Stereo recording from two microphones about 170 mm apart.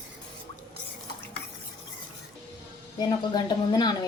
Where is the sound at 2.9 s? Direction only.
25° left (ahead or behind).